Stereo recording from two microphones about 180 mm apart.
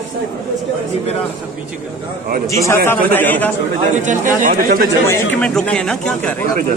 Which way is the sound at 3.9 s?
45° right (ahead or behind).